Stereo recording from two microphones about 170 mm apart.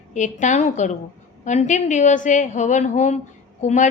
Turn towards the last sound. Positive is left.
turn(degrees=45)  # may be behind; listen again after turning